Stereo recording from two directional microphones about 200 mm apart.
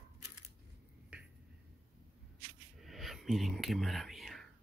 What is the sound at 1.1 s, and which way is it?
Finger snapping, 5° right (ahead or behind).